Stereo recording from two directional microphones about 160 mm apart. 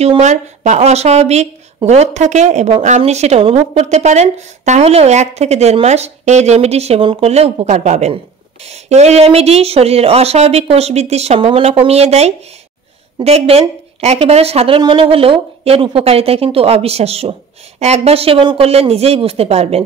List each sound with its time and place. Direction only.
0.0 s a woman's voice: 45° right (ahead or behind)